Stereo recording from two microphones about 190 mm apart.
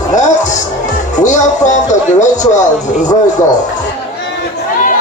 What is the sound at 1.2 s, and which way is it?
Speech, 40° left (ahead or behind).